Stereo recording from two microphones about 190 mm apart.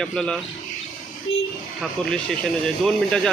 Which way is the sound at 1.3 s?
90° left.